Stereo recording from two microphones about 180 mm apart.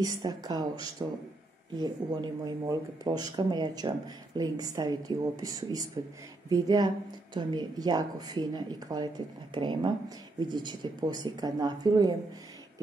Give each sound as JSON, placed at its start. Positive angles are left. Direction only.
{"t": 0.2, "sound": "speech", "side_deg": -20}